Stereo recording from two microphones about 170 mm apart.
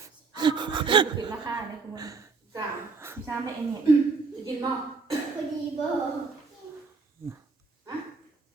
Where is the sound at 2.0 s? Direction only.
20° right (ahead or behind).